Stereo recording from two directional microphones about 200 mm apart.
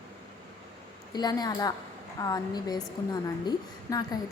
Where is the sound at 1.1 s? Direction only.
20° left (ahead or behind).